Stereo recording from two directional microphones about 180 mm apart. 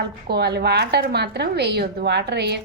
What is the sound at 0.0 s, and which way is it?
A woman's voice, 65° right (ahead or behind).